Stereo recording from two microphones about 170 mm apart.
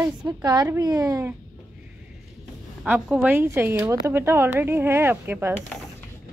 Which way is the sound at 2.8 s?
10° right (ahead or behind).